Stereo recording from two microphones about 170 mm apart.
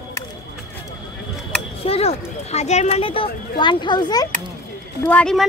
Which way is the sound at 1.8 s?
35° left (ahead or behind).